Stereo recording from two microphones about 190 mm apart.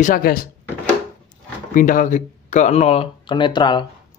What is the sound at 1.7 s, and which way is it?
Speech, 45° left (ahead or behind).